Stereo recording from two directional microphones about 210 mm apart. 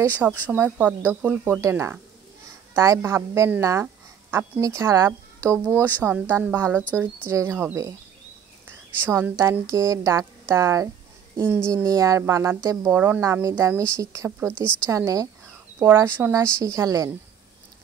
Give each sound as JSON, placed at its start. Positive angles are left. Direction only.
{"t": 0.0, "sound": "a woman's voice", "side_deg": -10}